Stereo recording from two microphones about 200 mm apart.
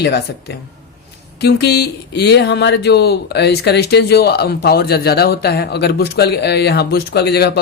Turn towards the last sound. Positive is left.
turn(degrees=55)  # may be behind; listen again after turning